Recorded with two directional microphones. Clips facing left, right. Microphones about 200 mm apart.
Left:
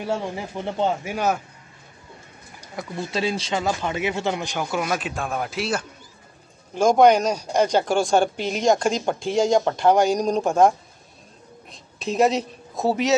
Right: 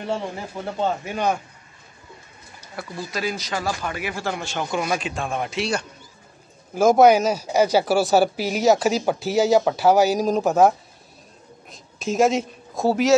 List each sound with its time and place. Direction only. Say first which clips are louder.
0.7 s speech: even; 10° left (ahead or behind)
2.6 s speech: left 2 dB; 20° left (ahead or behind)
4.6 s speech: right 2 dB; 5° left (ahead or behind)
11.7 s speech: right 1 dB; centre (ahead or behind)